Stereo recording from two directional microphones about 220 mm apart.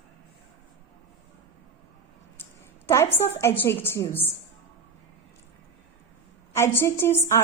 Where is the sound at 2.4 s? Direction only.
10° left (ahead or behind).